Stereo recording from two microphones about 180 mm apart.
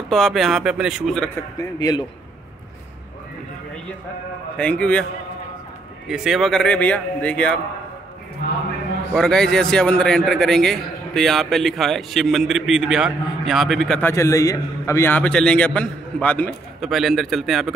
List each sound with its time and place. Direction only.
0.1 s a man's voice: centre (ahead or behind)
1.6 s a man's voice: 20° left (ahead or behind)
4.6 s a man's voice: 5° left (ahead or behind)
6.0 s a man's voice: 5° right (ahead or behind)
9.1 s a man's voice: 5° left (ahead or behind)